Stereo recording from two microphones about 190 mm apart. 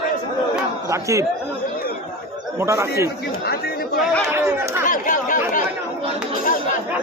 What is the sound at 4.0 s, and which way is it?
Speech, centre (ahead or behind).